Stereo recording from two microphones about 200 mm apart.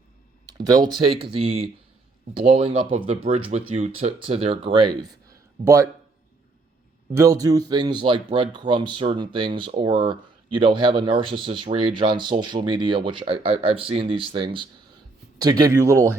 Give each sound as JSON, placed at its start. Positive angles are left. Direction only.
{"t": 0.4, "sound": "speech", "side_deg": -20}
{"t": 7.1, "sound": "speech", "side_deg": -15}